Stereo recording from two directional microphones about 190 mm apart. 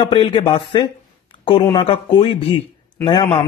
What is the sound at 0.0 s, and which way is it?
A man's voice, 25° left (ahead or behind).